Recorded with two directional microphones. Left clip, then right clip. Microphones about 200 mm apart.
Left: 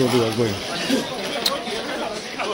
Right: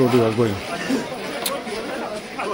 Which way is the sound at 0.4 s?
25° right (ahead or behind).